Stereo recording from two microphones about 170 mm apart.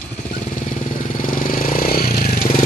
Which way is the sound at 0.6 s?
50° left (ahead or behind).